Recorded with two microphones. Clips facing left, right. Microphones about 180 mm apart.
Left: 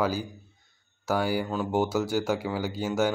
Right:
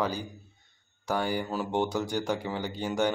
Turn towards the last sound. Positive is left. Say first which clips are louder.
# left 2 dB
turn(degrees=5)  # may be behind; listen again after turning